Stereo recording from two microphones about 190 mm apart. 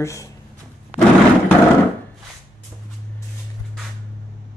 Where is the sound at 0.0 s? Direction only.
15° left (ahead or behind).